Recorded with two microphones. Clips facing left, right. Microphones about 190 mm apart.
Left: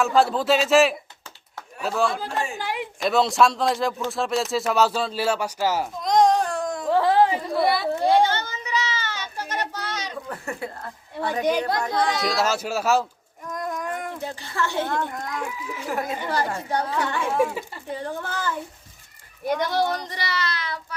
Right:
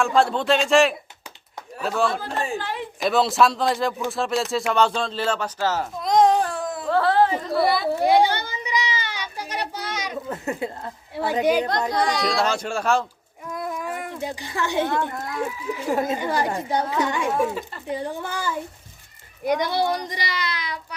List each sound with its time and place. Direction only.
0.0 s speech: centre (ahead or behind)
2.6 s a woman's voice: 15° left (ahead or behind)
3.0 s speech: centre (ahead or behind)
6.0 s a sound: centre (ahead or behind)
6.8 s a sound: 15° left (ahead or behind)
7.6 s speech: centre (ahead or behind)
7.9 s a sound: 10° right (ahead or behind)
10.2 s speech: 20° right (ahead or behind)
11.9 s speech: centre (ahead or behind)
13.5 s a sound: 5° right (ahead or behind)
14.9 s speech: 5° right (ahead or behind)
15.9 s a child's voice: 20° right (ahead or behind)